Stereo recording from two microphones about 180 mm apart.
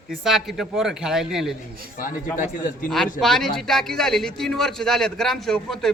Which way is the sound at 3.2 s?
Centre (ahead or behind).